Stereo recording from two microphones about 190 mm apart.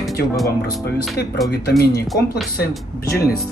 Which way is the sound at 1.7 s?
55° left (ahead or behind).